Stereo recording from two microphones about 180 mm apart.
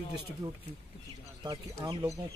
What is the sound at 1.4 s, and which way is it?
Speech, 25° right (ahead or behind).